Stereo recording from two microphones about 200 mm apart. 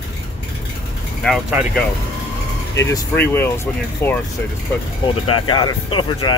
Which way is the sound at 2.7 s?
15° left (ahead or behind).